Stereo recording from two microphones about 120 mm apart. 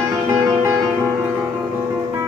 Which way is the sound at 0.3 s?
25° right (ahead or behind).